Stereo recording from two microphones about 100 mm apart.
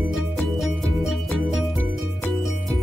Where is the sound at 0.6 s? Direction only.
Centre (ahead or behind).